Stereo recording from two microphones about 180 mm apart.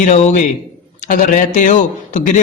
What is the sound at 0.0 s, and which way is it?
A man's voice, 40° left (ahead or behind).